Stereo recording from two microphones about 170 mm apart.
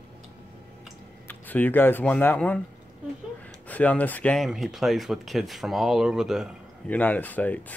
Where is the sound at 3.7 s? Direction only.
10° left (ahead or behind).